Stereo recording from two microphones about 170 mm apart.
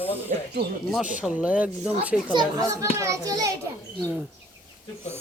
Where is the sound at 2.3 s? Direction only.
25° right (ahead or behind).